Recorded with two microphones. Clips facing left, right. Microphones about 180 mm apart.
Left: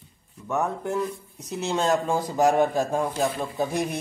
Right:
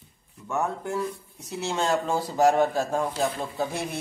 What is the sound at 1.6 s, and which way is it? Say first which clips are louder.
A man's voice: left 2 dB; 20° left (ahead or behind).